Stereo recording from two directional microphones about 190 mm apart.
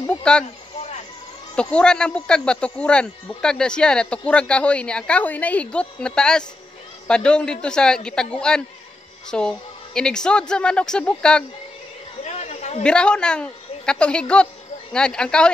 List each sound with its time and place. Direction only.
0.2 s speech: 5° left (ahead or behind)
1.5 s a woman's voice: 5° left (ahead or behind)
12.2 s a sound: 35° left (ahead or behind)
12.8 s a woman's voice: 5° left (ahead or behind)